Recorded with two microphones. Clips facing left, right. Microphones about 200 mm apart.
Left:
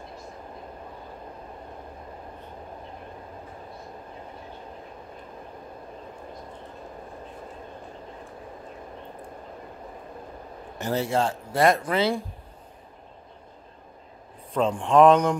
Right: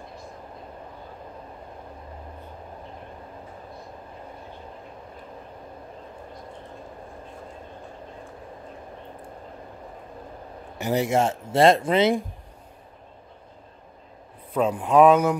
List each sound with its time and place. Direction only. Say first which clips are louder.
10.8 s speech: right 3 dB; 15° right (ahead or behind)
14.5 s speech: right 1 dB; 5° right (ahead or behind)